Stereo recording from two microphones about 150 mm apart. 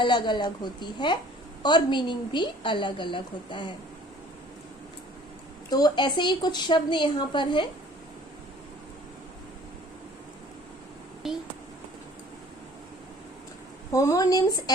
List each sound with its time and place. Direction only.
0.0 s a woman's voice: 30° left (ahead or behind)
5.7 s a woman's voice: 30° left (ahead or behind)
11.2 s a child's voice: centre (ahead or behind)
13.9 s a woman's voice: 20° left (ahead or behind)